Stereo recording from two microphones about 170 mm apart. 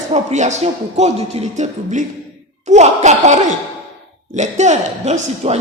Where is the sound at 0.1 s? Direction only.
40° right (ahead or behind).